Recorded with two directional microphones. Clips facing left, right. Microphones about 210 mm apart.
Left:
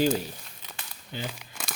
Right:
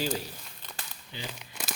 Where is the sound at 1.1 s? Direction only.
50° left (ahead or behind).